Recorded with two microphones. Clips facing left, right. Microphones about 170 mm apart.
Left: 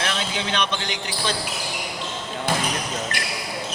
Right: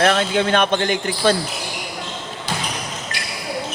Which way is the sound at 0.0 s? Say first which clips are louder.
Right 10 dB; 55° right (ahead or behind).